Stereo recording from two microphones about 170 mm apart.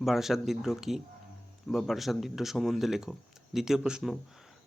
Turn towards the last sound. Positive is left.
turn(degrees=0)  # may be behind; listen again after turning